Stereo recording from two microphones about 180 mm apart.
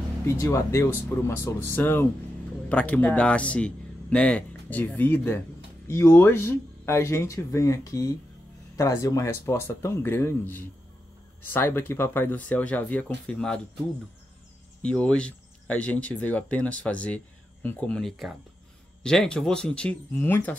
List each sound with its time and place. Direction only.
0.4 s speech: 15° left (ahead or behind)
11.4 s speech: 10° left (ahead or behind)
14.8 s speech: 5° left (ahead or behind)